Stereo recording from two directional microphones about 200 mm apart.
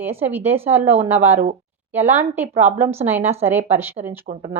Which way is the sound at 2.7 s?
10° right (ahead or behind).